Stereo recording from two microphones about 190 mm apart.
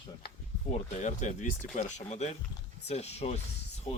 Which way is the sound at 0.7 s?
40° left (ahead or behind).